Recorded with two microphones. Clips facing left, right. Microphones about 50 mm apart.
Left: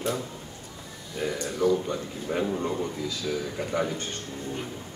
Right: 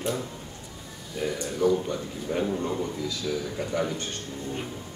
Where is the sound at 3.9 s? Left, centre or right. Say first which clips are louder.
Even; left.